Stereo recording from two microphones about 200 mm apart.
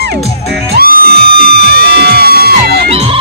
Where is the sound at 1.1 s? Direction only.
50° right (ahead or behind).